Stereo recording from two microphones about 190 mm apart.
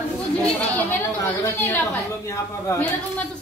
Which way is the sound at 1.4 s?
10° left (ahead or behind).